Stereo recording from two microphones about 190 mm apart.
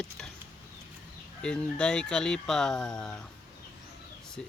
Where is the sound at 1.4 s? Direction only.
5° left (ahead or behind).